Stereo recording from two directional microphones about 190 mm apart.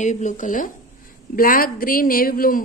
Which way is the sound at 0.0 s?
40° left (ahead or behind).